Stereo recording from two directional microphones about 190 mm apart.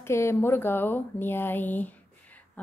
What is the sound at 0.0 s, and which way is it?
Speech, 15° left (ahead or behind).